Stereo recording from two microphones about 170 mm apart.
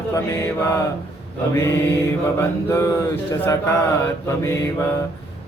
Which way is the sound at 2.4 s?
15° left (ahead or behind).